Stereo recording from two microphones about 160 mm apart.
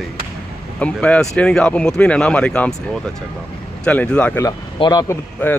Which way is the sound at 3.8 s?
5° left (ahead or behind).